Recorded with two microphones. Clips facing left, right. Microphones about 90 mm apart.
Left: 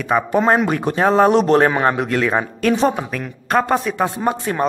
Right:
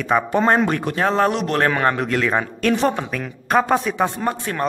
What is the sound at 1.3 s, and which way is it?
Speech, 35° left (ahead or behind).